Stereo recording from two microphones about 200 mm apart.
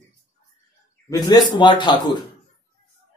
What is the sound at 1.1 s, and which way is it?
Speech, 20° left (ahead or behind).